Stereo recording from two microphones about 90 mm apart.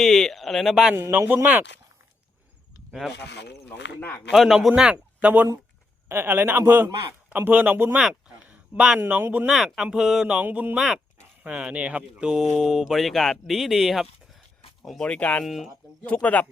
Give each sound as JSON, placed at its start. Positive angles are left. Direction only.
{"t": 0.0, "sound": "speech", "side_deg": 5}
{"t": 0.9, "sound": "a man's voice", "side_deg": -30}
{"t": 1.3, "sound": "a man's voice", "side_deg": -20}
{"t": 3.7, "sound": "speech", "side_deg": 20}
{"t": 4.3, "sound": "speech", "side_deg": 0}
{"t": 4.7, "sound": "a man's voice", "side_deg": -10}
{"t": 7.9, "sound": "a sound", "side_deg": -15}
{"t": 9.0, "sound": "a man's voice", "side_deg": -20}
{"t": 9.5, "sound": "speech", "side_deg": -5}
{"t": 10.4, "sound": "a man's voice", "side_deg": -20}
{"t": 10.8, "sound": "speech", "side_deg": -5}
{"t": 15.4, "sound": "speech", "side_deg": 0}
{"t": 16.0, "sound": "speech", "side_deg": 15}